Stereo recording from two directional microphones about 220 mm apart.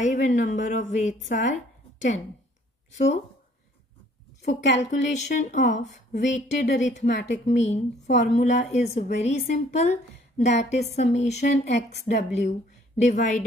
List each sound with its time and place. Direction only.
0.0 s a woman's voice: 35° left (ahead or behind)
4.7 s a woman's voice: 30° left (ahead or behind)